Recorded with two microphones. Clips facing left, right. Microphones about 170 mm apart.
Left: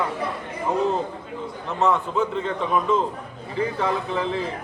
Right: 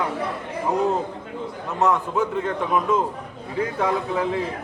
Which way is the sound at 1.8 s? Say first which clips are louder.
Even; 5° right (ahead or behind).